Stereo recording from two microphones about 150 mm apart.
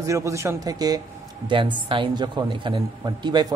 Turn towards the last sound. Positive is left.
turn(degrees=-30)  # may be behind; listen again after turning